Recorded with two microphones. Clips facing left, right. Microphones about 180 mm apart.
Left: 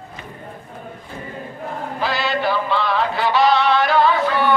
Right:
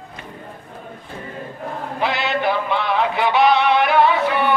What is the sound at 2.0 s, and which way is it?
Music, 20° right (ahead or behind).